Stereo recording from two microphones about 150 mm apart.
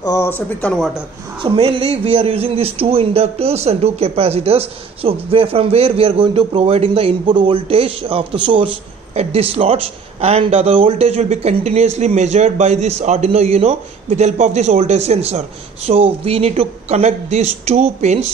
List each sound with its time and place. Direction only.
0.0 s a man's voice: 20° left (ahead or behind)
1.4 s a man's voice: 35° right (ahead or behind)